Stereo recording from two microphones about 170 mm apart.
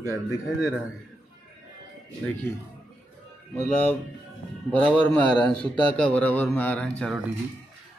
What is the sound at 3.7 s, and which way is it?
A man's voice, 10° left (ahead or behind).